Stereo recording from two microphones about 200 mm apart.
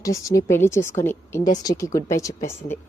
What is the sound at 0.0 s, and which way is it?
A woman's voice, 15° left (ahead or behind).